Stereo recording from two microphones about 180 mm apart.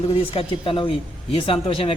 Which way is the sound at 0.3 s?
30° left (ahead or behind).